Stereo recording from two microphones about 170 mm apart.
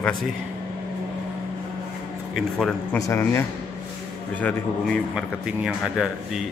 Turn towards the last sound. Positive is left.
turn(degrees=-5)  # may be behind; listen again after turning